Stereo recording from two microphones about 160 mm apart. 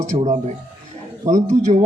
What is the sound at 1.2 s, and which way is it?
Speech, 20° right (ahead or behind).